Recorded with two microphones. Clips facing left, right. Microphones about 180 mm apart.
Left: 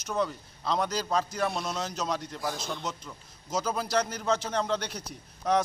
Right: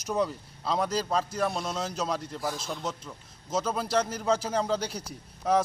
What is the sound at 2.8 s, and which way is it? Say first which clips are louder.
Speech: right 2 dB; 30° right (ahead or behind).